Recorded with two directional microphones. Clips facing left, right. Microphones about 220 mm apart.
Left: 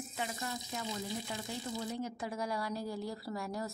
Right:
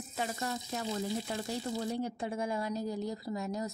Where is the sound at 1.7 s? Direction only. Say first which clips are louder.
Right 3 dB; 30° right (ahead or behind).